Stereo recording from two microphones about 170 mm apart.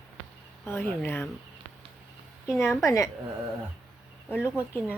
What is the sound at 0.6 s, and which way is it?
Speech, 15° left (ahead or behind).